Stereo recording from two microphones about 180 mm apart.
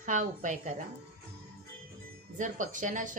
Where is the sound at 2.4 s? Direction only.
45° right (ahead or behind).